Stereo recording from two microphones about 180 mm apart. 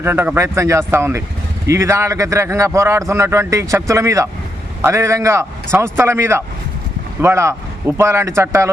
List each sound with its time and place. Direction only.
0.0 s speech: 10° right (ahead or behind)